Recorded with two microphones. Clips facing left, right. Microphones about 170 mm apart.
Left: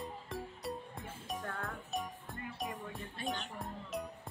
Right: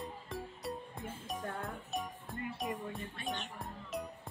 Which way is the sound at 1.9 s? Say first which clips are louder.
Even; centre (ahead or behind).